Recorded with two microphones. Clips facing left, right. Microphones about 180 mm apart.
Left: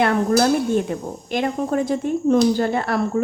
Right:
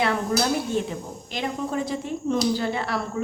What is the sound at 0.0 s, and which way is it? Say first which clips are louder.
A woman's voice: left 6 dB; 50° left (ahead or behind).